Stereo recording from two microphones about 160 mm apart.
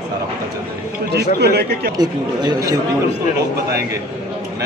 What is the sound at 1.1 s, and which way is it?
Speech, 90° right.